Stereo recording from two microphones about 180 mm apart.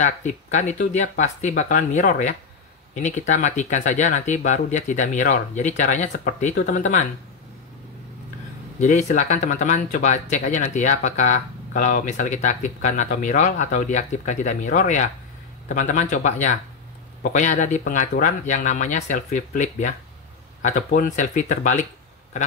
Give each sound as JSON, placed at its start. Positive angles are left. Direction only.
{"t": 0.0, "sound": "speech", "side_deg": 40}
{"t": 8.7, "sound": "speech", "side_deg": 40}